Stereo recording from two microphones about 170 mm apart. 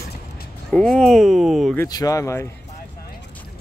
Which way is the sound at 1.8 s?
20° left (ahead or behind).